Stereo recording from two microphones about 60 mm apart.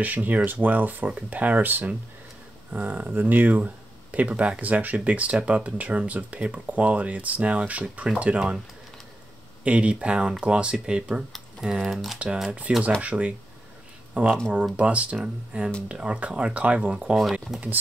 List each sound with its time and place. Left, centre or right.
0.0 s speech: right
9.7 s speech: right
13.0 s speech: right
17.2 s speech: centre